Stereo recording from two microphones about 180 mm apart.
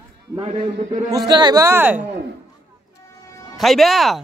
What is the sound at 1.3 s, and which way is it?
Speech, 20° right (ahead or behind).